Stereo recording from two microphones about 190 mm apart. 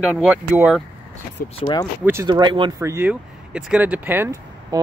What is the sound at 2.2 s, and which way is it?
Speech, 25° right (ahead or behind).